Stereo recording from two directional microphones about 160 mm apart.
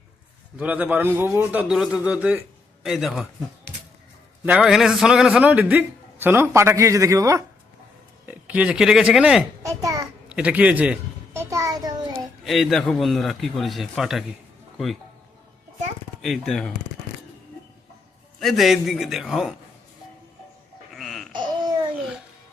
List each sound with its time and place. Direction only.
0.5 s a man's voice: 10° right (ahead or behind)
4.4 s a man's voice: 5° right (ahead or behind)
8.3 s speech: 10° right (ahead or behind)
9.6 s a child's voice: 20° right (ahead or behind)
10.2 s speech: 5° right (ahead or behind)
11.5 s child singing: 20° right (ahead or behind)
12.5 s speech: centre (ahead or behind)
16.2 s speech: centre (ahead or behind)
18.3 s speech: centre (ahead or behind)
20.9 s a sound: centre (ahead or behind)